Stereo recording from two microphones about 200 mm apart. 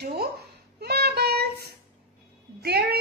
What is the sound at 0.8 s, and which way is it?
Child singing, 50° right (ahead or behind).